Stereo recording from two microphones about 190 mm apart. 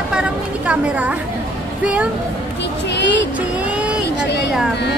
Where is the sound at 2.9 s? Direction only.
70° left (ahead or behind).